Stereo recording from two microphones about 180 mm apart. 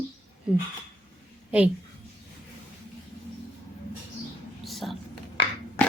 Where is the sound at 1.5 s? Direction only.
5° right (ahead or behind).